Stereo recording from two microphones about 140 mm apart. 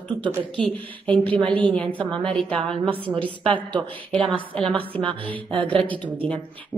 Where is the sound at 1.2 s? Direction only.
40° right (ahead or behind).